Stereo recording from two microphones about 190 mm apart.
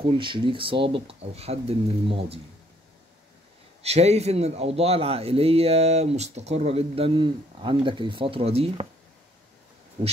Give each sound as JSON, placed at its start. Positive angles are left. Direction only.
{"t": 0.2, "sound": "speech", "side_deg": -25}
{"t": 3.8, "sound": "a man's voice", "side_deg": -35}